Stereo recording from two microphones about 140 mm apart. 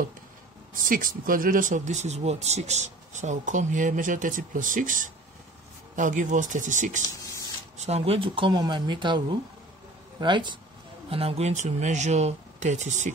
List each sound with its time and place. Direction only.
0.8 s speech: 80° right; by 7.0 s 60° right (ahead or behind)
7.7 s speech: 50° right (ahead or behind); by 9.2 s 35° right (ahead or behind)
10.2 s speech: 35° right (ahead or behind)
11.1 s speech: 45° right (ahead or behind); by 13.1 s 60° right (ahead or behind)